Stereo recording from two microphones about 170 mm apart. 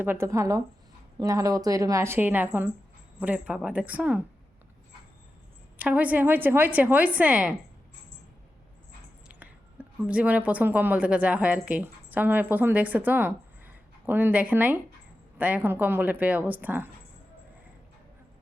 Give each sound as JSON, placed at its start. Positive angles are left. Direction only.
{"t": 0.0, "sound": "a woman's voice", "side_deg": -15}
{"t": 5.7, "sound": "a woman's voice", "side_deg": -10}
{"t": 9.3, "sound": "a woman's voice", "side_deg": -10}